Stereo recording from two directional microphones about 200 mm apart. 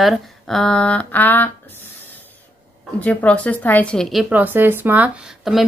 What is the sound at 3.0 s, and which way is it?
A woman's voice, 5° left (ahead or behind).